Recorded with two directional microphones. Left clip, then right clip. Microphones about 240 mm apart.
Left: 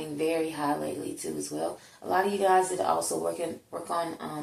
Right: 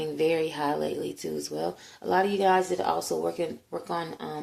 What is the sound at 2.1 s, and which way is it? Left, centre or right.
Speech, right.